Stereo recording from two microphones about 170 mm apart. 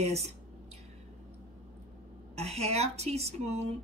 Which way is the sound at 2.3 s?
40° right (ahead or behind).